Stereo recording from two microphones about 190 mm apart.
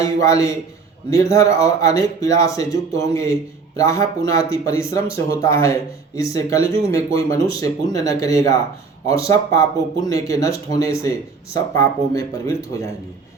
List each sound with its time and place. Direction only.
0.0 s speech: 15° left (ahead or behind)